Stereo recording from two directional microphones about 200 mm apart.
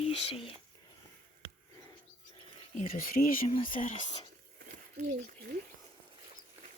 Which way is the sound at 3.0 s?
45° left (ahead or behind).